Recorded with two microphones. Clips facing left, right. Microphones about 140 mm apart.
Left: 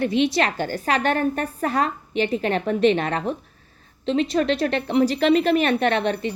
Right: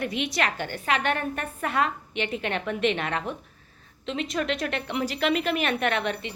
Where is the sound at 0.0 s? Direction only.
30° left (ahead or behind).